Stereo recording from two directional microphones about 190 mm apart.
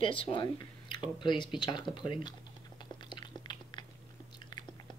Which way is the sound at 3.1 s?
25° left (ahead or behind).